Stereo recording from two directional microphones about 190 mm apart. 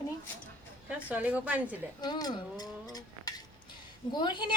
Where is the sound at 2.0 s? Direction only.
20° left (ahead or behind).